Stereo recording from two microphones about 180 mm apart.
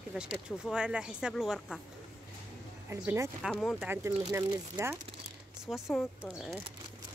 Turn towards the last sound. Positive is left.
turn(degrees=0)  # may be behind; listen again after turning